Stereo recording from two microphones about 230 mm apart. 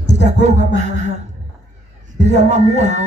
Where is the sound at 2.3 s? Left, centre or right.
Right.